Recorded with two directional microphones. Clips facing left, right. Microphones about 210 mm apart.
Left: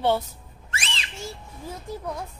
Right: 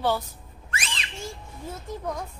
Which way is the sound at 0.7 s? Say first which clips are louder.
Even; 30° left (ahead or behind).